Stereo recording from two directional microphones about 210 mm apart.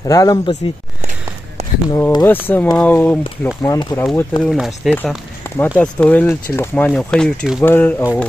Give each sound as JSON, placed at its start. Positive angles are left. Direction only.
{"t": 0.0, "sound": "speech", "side_deg": 15}
{"t": 1.6, "sound": "a sound", "side_deg": -30}
{"t": 2.0, "sound": "speech", "side_deg": 10}